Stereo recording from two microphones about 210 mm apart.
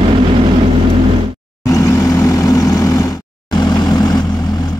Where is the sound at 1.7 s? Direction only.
15° left (ahead or behind).